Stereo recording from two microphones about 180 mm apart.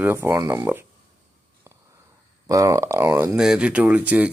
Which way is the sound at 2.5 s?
20° right (ahead or behind).